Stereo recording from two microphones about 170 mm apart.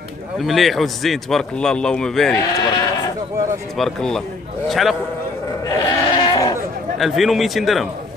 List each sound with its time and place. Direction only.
0.4 s a man's voice: centre (ahead or behind)
2.5 s speech: 25° left (ahead or behind)
3.7 s a man's voice: centre (ahead or behind)
5.7 s goat: 25° left (ahead or behind)
7.0 s a man's voice: centre (ahead or behind)